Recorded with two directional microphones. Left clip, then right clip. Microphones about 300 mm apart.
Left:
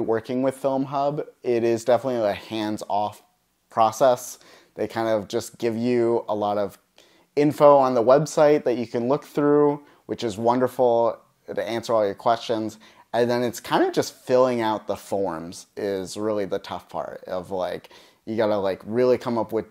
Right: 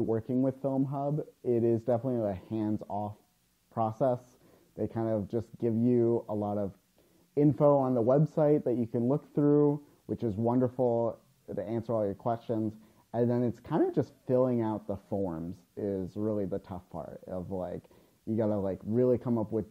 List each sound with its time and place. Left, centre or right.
0.2 s speech: centre
6.2 s speech: left
7.3 s speech: centre
10.8 s speech: left
11.1 s speech: centre
17.8 s speech: centre
19.3 s speech: centre